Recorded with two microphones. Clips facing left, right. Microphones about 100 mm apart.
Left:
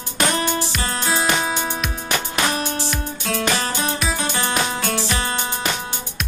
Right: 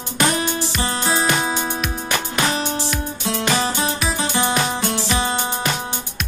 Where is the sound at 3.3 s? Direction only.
25° right (ahead or behind).